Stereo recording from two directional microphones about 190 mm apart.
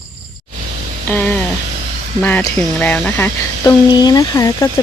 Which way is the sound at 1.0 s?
10° left (ahead or behind).